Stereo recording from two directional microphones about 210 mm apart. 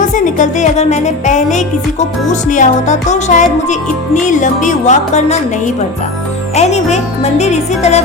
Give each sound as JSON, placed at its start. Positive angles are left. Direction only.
{"t": 0.0, "sound": "music", "side_deg": 35}
{"t": 6.6, "sound": "speech", "side_deg": 30}